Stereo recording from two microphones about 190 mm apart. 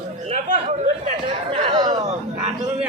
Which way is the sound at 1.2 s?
25° right (ahead or behind).